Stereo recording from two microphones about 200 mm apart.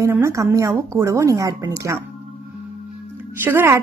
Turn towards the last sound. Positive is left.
turn(degrees=-10)  # may be behind; listen again after turning